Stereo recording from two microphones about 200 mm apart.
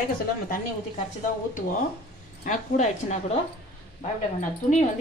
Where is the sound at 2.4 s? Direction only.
35° left (ahead or behind).